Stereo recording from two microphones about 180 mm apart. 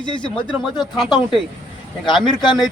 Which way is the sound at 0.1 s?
5° left (ahead or behind).